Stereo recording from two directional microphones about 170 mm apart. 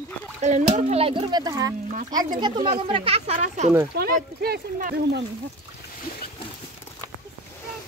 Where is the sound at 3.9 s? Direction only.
65° right (ahead or behind).